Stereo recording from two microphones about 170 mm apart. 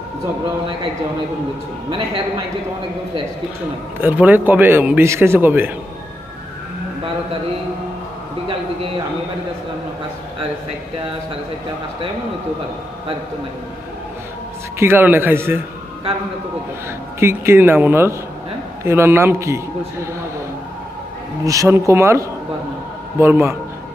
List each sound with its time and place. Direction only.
4.0 s a man's voice: 10° right (ahead or behind)
14.8 s a man's voice: 10° right (ahead or behind)
17.2 s a man's voice: 15° right (ahead or behind)
21.4 s a man's voice: 20° right (ahead or behind)